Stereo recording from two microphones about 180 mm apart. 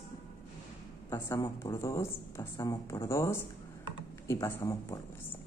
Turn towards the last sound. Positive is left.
turn(degrees=15)  # may be behind; listen again after turning